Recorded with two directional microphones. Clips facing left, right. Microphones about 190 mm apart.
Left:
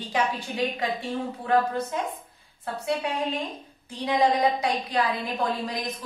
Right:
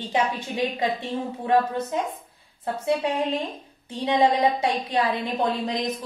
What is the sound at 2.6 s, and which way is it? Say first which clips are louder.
A woman's voice: right 4 dB; 25° right (ahead or behind).